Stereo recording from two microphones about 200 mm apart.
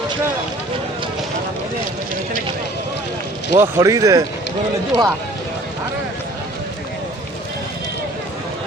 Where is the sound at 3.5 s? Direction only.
15° right (ahead or behind).